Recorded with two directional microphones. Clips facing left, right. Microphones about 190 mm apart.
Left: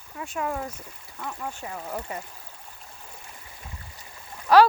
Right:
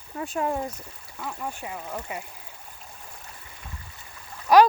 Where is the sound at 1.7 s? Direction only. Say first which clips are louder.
Left 1 dB; 5° left (ahead or behind).